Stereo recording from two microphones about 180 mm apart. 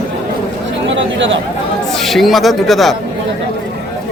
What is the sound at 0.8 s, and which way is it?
Chatter, 90° right.